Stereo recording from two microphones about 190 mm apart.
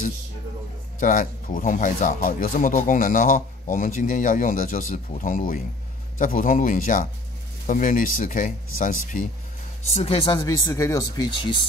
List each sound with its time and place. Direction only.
0.9 s speech: 45° left (ahead or behind)
9.8 s speech: 30° left (ahead or behind)